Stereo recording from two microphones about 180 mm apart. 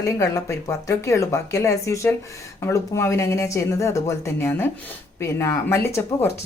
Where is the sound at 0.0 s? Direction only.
15° left (ahead or behind).